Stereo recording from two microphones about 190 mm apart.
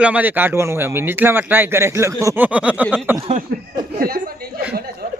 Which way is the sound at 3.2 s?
30° right (ahead or behind).